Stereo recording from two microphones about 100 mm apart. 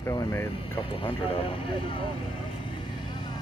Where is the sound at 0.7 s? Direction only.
60° left (ahead or behind).